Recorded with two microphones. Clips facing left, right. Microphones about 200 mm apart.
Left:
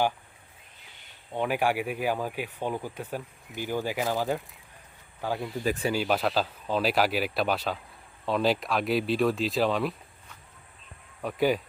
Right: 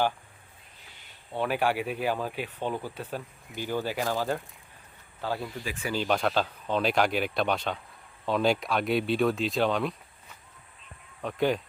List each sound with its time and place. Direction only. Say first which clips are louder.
1.3 s speech: left 1 dB; 15° left (ahead or behind)
5.6 s speech: left 7 dB; 40° left (ahead or behind)
5.9 s speech: right 4 dB; 5° left (ahead or behind)
11.2 s speech: left 1 dB; 5° left (ahead or behind)